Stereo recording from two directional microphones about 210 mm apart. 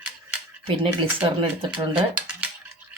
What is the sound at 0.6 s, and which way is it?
Speech, 25° right (ahead or behind).